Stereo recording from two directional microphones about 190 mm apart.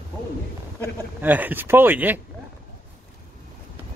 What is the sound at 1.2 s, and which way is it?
Speech, 10° right (ahead or behind).